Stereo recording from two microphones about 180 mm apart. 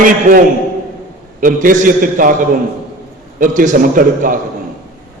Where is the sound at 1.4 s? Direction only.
50° right (ahead or behind).